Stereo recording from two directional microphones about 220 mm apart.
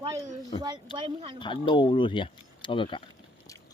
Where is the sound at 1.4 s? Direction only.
20° left (ahead or behind).